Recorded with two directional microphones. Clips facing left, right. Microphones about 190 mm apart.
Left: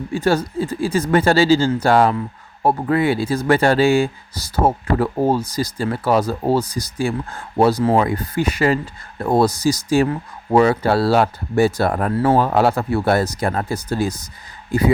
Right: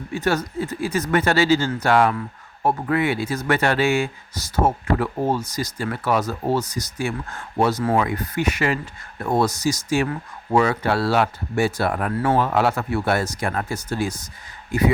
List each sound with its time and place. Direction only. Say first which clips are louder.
0.1 s speech: left 4 dB; 30° left (ahead or behind)